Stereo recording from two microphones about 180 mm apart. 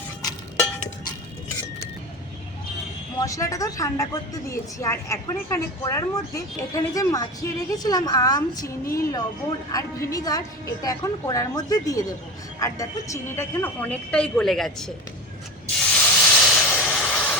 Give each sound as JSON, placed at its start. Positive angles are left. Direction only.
{"t": 3.2, "sound": "a woman's voice", "side_deg": 20}
{"t": 16.0, "sound": "hiss", "side_deg": 5}